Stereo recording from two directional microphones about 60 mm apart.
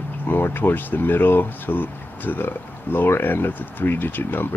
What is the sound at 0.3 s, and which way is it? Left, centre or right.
Speech, left.